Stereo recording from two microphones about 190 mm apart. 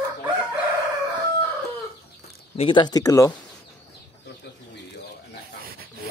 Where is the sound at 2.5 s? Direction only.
30° left (ahead or behind).